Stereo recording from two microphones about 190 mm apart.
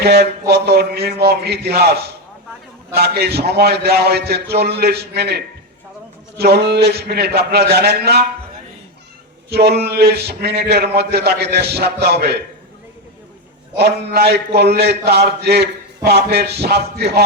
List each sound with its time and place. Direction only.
0.0 s a man's voice: 55° right (ahead or behind)
9.5 s a man's voice: 60° right (ahead or behind)
13.7 s a man's voice: 60° right (ahead or behind)